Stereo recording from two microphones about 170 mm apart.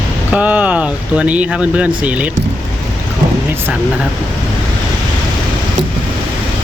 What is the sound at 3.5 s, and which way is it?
Speech, 10° right (ahead or behind).